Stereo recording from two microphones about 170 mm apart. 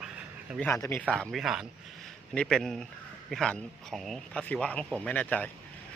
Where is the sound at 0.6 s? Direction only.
15° left (ahead or behind).